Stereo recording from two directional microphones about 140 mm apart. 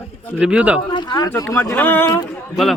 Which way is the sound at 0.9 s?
35° left (ahead or behind).